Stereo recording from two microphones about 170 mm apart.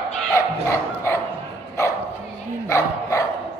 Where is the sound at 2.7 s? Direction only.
20° left (ahead or behind).